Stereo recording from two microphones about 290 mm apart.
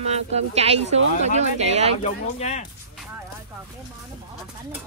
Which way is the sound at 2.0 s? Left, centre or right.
Left.